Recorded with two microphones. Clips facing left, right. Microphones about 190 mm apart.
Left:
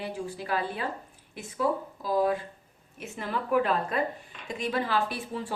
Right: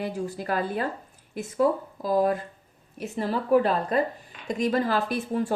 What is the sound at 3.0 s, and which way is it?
A woman's voice, 35° right (ahead or behind).